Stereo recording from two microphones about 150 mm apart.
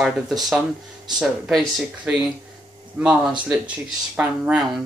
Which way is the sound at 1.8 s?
5° right (ahead or behind).